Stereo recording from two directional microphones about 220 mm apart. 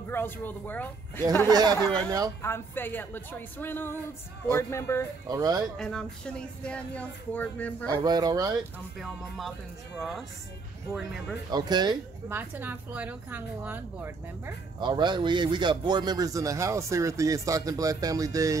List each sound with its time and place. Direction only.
0.1 s speech: 10° left (ahead or behind)
1.5 s speech: 20° right (ahead or behind)
2.4 s speech: 10° left (ahead or behind)
5.3 s speech: 15° right (ahead or behind)
5.8 s speech: 5° left (ahead or behind)
8.0 s speech: 15° right (ahead or behind)
8.9 s speech: centre (ahead or behind)
11.5 s speech: 20° right (ahead or behind)
12.4 s speech: 10° right (ahead or behind)